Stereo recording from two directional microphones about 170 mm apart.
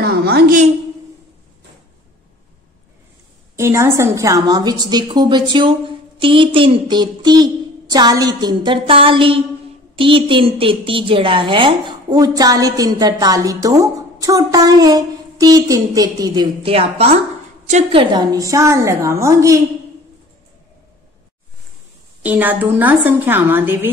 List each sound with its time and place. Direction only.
0.0 s a sound: 65° right (ahead or behind)
3.5 s a woman's voice: 15° right (ahead or behind); by 18.0 s 40° right (ahead or behind)
18.1 s a woman's voice: 25° right (ahead or behind)
22.2 s a woman's voice: 10° right (ahead or behind)